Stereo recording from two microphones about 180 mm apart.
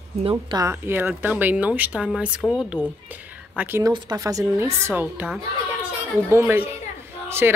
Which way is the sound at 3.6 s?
15° right (ahead or behind).